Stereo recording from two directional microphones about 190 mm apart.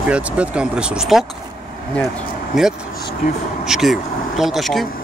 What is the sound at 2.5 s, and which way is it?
Speech, centre (ahead or behind).